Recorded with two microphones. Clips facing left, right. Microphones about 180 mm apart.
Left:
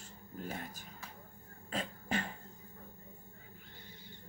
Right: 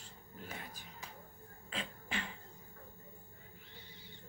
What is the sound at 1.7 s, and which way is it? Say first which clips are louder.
Beatboxing: left 6 dB; 40° left (ahead or behind).